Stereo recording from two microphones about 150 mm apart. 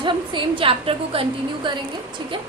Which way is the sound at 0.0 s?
35° right (ahead or behind).